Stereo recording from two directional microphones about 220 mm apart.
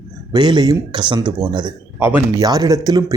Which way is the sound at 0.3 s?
20° right (ahead or behind).